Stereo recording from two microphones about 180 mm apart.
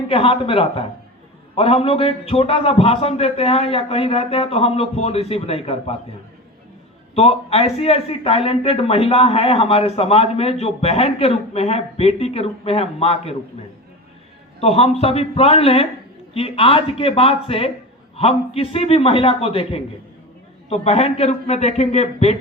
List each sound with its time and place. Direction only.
0.1 s a man's voice: 30° left (ahead or behind)
7.2 s a man's voice: 35° left (ahead or behind)
14.6 s a man's voice: 35° left (ahead or behind)